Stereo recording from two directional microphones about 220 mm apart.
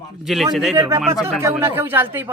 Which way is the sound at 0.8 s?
15° right (ahead or behind).